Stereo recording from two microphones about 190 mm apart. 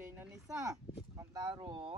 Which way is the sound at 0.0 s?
10° right (ahead or behind).